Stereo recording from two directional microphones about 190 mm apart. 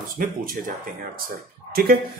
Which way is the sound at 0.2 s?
50° right (ahead or behind).